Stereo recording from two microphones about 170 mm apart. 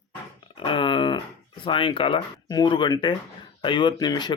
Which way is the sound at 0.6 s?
30° left (ahead or behind).